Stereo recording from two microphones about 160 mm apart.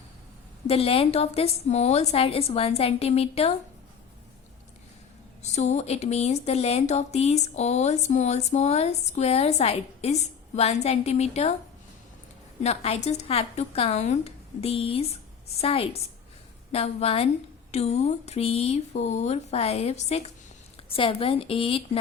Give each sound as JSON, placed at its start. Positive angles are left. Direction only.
{"t": 0.7, "sound": "a woman's voice", "side_deg": 35}
{"t": 5.4, "sound": "speech", "side_deg": 45}
{"t": 12.6, "sound": "a woman's voice", "side_deg": 40}